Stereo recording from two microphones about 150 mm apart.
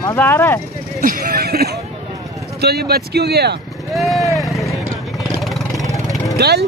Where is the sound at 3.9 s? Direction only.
Centre (ahead or behind).